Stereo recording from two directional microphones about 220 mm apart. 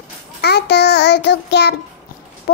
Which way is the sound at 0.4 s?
45° left (ahead or behind).